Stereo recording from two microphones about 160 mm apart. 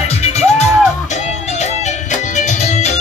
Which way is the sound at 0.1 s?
45° left (ahead or behind).